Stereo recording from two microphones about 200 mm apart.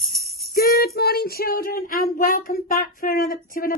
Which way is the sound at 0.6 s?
50° left (ahead or behind).